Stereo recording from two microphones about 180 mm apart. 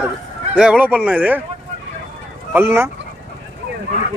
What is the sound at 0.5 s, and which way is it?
Speech, 5° right (ahead or behind).